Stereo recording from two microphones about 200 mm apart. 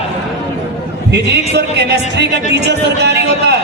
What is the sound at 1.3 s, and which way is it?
Speech, 55° right (ahead or behind).